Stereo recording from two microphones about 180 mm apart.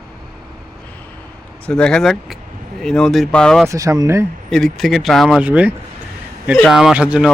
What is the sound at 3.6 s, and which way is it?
Speech, 20° right (ahead or behind).